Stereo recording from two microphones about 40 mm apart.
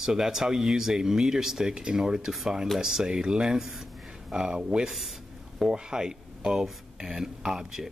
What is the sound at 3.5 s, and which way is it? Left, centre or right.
Speech, centre.